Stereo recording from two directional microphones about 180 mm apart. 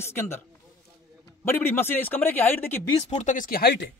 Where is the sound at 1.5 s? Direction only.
10° left (ahead or behind).